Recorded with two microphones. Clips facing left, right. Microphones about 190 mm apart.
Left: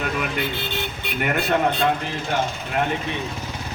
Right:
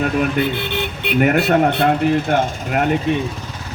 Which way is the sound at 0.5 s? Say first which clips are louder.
Right 5 dB; 60° right (ahead or behind).